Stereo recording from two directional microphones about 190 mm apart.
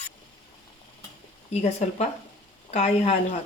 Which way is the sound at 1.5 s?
35° left (ahead or behind).